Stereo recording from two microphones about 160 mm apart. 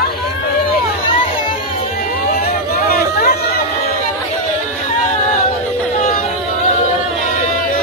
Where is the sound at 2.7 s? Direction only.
70° left (ahead or behind).